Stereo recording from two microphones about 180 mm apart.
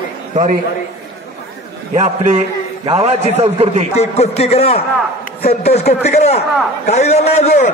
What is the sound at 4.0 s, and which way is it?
A man's voice, 35° left (ahead or behind).